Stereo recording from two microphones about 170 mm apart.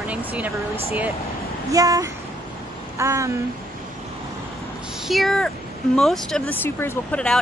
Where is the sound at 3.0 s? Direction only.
15° right (ahead or behind).